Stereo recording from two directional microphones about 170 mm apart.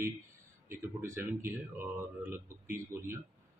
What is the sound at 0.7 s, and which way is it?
Speech, 15° right (ahead or behind).